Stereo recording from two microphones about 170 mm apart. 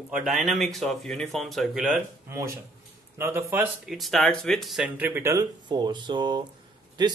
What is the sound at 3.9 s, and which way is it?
A man's voice, centre (ahead or behind).